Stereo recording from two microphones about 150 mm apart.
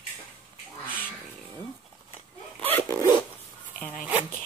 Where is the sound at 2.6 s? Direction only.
15° left (ahead or behind).